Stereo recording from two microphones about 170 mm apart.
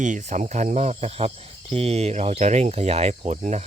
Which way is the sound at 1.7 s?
35° right (ahead or behind).